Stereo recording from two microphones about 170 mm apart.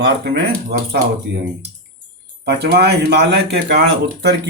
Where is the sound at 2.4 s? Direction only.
75° right (ahead or behind).